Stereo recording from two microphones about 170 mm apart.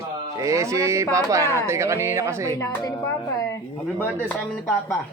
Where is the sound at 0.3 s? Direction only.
20° right (ahead or behind).